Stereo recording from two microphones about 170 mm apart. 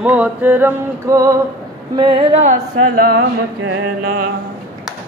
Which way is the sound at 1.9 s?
30° right (ahead or behind).